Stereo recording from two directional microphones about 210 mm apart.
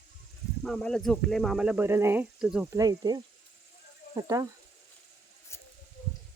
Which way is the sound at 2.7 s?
15° right (ahead or behind).